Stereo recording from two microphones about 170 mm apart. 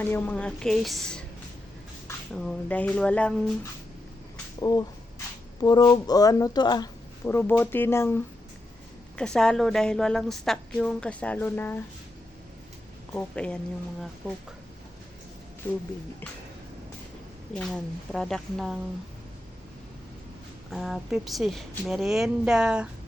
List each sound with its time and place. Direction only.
0.0 s a woman's voice: 10° left (ahead or behind)
2.3 s speech: 5° left (ahead or behind)
4.6 s speech: 20° left (ahead or behind)
9.1 s a woman's voice: 5° left (ahead or behind)
13.1 s speech: 5° left (ahead or behind)
15.6 s speech: 10° left (ahead or behind)
17.5 s a woman's voice: centre (ahead or behind)
20.7 s a woman's voice: centre (ahead or behind)